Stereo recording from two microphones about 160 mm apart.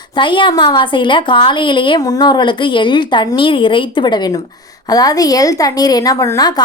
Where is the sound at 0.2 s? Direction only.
30° left (ahead or behind).